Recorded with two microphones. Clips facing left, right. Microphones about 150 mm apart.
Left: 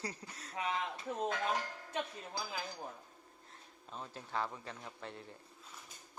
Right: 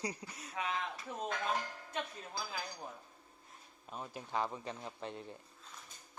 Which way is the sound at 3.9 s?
15° right (ahead or behind).